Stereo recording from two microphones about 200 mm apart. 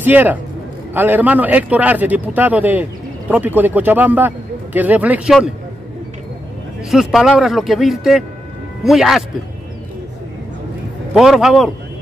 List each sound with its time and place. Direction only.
0.0 s a man's voice: 10° right (ahead or behind)
6.9 s speech: centre (ahead or behind)
11.1 s speech: centre (ahead or behind)